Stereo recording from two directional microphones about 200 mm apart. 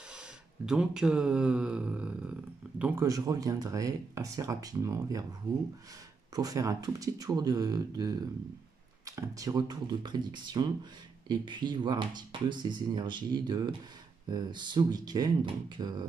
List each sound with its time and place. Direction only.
0.7 s speech: 5° right (ahead or behind)
6.3 s speech: 20° right (ahead or behind)